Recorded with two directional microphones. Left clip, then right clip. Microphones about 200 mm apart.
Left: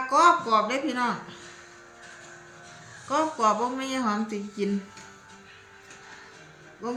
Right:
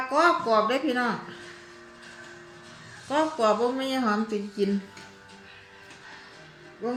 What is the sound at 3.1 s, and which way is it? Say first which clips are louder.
A woman's voice: even; 5° left (ahead or behind).